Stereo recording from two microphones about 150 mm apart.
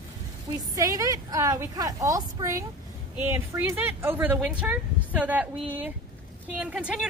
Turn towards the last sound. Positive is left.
turn(degrees=-10)  # may be behind; listen again after turning